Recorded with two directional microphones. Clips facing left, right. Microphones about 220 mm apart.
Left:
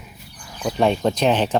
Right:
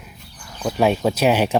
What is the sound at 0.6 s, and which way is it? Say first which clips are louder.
Speech: right 1 dB; 5° right (ahead or behind).